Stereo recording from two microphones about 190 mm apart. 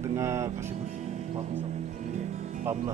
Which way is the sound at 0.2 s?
15° right (ahead or behind).